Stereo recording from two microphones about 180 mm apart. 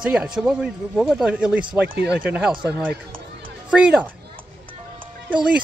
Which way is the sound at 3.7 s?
5° right (ahead or behind).